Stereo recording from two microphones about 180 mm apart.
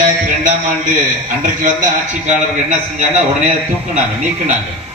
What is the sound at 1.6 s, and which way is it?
Speech, 45° right (ahead or behind).